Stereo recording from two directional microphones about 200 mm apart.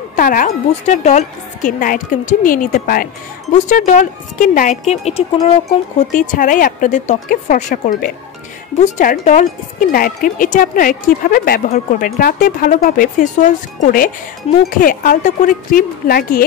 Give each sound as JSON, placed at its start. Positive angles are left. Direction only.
{"t": 0.1, "sound": "speech", "side_deg": 45}